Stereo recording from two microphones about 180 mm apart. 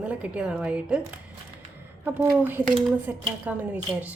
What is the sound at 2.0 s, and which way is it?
Speech, 10° right (ahead or behind).